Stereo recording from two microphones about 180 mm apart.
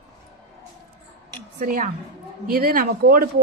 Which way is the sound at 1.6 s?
50° right (ahead or behind).